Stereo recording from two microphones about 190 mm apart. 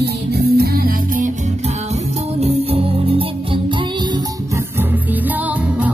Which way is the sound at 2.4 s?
30° right (ahead or behind).